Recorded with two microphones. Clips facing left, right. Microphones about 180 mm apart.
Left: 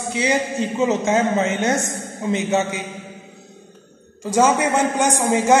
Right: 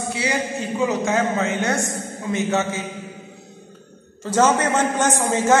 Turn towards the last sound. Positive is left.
turn(degrees=15)  # may be behind; listen again after turning